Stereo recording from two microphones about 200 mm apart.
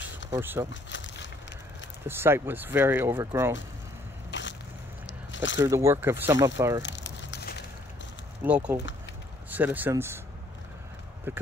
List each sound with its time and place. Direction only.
0.3 s speech: 10° right (ahead or behind)
0.8 s a sound: 65° left (ahead or behind)
2.0 s speech: 10° right (ahead or behind)
4.3 s crushing: 65° left (ahead or behind)
5.0 s biting: 65° left (ahead or behind)
5.7 s speech: 15° right (ahead or behind)
6.8 s a sound: 65° left (ahead or behind)
8.5 s speech: 5° right (ahead or behind)
11.3 s speech: 10° right (ahead or behind)